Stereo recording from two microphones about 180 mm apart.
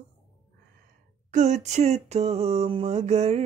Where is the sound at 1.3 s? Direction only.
40° right (ahead or behind).